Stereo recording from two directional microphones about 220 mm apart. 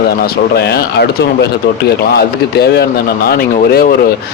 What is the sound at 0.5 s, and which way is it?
Speech, 50° left (ahead or behind).